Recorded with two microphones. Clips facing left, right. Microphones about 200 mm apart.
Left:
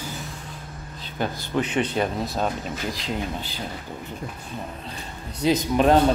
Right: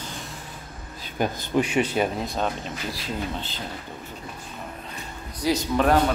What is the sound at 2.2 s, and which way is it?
Speech, centre (ahead or behind).